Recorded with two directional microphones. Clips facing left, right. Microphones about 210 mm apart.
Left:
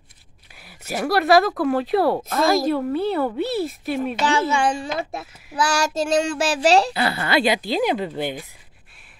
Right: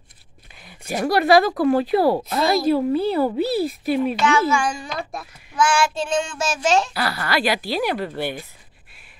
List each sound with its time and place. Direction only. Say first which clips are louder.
0.6 s speech: right 2 dB; 5° left (ahead or behind)
4.2 s child singing: right 1 dB; 35° left (ahead or behind)
5.6 s child singing: right 1 dB; 40° left (ahead or behind)
6.9 s speech: left 2 dB; 25° left (ahead or behind)